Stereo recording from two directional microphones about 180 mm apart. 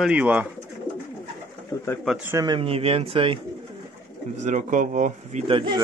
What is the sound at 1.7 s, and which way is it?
Pigeon, 20° left (ahead or behind).